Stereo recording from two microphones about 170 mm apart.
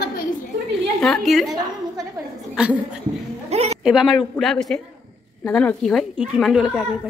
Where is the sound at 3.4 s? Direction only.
40° right (ahead or behind).